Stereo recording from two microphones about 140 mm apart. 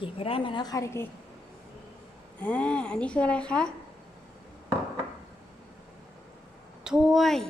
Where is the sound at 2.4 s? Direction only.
10° left (ahead or behind).